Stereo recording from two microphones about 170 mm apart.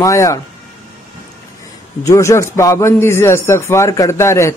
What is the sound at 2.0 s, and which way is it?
A man's voice, 15° left (ahead or behind).